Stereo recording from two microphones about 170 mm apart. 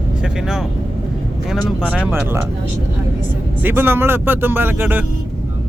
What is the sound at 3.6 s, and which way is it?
Speech, 10° right (ahead or behind).